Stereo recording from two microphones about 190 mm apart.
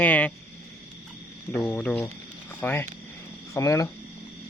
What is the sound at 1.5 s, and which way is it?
Speech, 5° left (ahead or behind).